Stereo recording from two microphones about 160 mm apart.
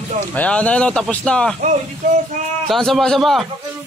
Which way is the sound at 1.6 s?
50° right (ahead or behind).